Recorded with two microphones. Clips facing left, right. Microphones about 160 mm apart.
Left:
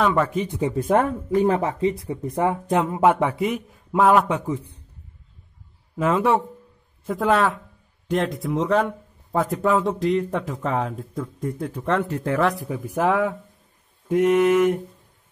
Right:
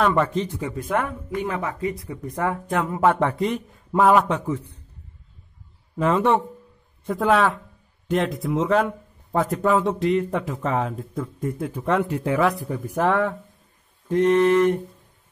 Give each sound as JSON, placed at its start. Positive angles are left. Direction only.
{"t": 0.0, "sound": "speech", "side_deg": 0}
{"t": 0.7, "sound": "speech", "side_deg": 35}
{"t": 4.5, "sound": "mantra", "side_deg": 15}
{"t": 5.9, "sound": "speech", "side_deg": 0}
{"t": 14.0, "sound": "mantra", "side_deg": 10}